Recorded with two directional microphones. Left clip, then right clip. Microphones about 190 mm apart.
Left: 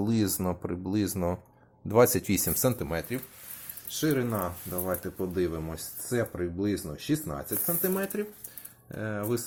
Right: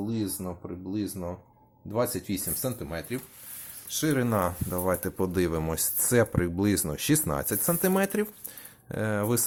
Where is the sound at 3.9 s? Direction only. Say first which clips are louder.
Right 1 dB; 20° right (ahead or behind).